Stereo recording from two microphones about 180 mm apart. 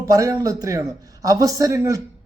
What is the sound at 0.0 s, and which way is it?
A man's voice, 20° right (ahead or behind).